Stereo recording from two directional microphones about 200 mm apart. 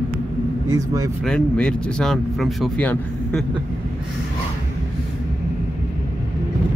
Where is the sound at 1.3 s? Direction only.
5° left (ahead or behind).